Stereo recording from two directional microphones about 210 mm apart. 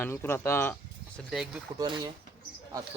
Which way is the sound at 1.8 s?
20° right (ahead or behind).